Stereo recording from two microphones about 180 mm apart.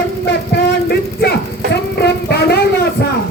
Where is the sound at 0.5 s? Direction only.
60° left (ahead or behind).